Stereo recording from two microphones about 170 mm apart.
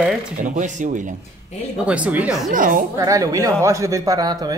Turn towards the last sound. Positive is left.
turn(degrees=-20)  # may be behind; listen again after turning